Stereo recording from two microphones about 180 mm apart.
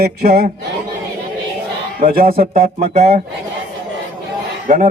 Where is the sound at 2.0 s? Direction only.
55° right (ahead or behind).